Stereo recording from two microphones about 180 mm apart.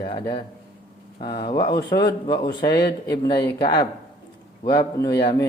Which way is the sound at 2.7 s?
60° left (ahead or behind).